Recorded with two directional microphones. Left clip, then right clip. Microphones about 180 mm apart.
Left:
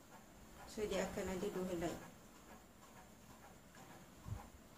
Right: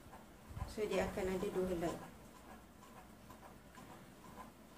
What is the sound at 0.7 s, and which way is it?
Speech, 15° left (ahead or behind).